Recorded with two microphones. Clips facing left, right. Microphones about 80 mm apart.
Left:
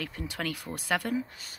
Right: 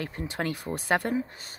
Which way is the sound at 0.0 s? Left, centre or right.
Right.